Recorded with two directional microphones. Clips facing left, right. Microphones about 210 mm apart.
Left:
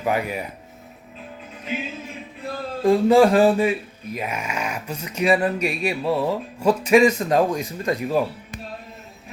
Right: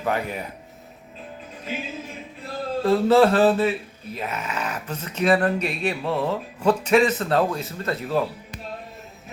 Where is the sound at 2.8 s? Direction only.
15° left (ahead or behind).